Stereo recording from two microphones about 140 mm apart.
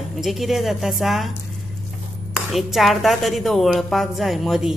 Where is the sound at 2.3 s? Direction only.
Centre (ahead or behind).